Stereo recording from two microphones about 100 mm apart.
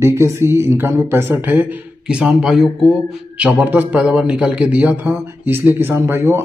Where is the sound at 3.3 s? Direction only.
15° right (ahead or behind).